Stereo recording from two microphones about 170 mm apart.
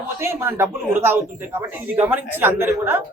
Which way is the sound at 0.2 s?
15° right (ahead or behind).